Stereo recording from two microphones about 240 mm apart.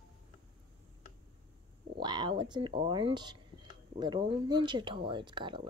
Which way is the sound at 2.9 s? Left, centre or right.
Centre.